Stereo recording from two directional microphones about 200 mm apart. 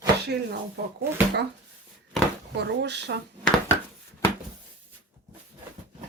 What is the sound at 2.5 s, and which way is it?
Speech, 60° right (ahead or behind).